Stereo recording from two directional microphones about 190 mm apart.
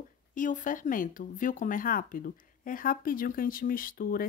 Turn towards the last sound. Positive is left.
turn(degrees=50)  # may be behind; listen again after turning